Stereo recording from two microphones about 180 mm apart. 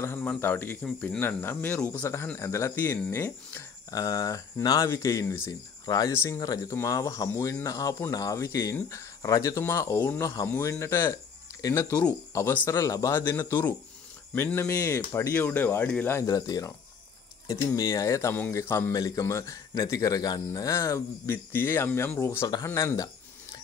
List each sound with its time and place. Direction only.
0.0 s speech: 10° left (ahead or behind)